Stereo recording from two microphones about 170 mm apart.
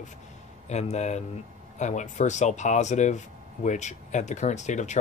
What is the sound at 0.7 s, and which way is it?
Speech, 40° left (ahead or behind).